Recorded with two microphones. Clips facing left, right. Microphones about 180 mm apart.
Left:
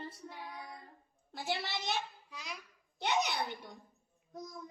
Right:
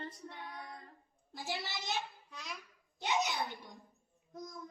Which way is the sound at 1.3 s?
65° left (ahead or behind).